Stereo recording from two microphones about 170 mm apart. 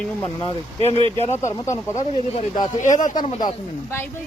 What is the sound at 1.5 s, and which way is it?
Speech, 15° left (ahead or behind).